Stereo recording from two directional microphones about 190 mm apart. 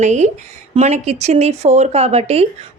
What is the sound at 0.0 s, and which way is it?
Speech, 40° right (ahead or behind).